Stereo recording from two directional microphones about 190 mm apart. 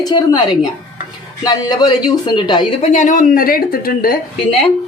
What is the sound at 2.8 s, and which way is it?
Speech, 40° left (ahead or behind).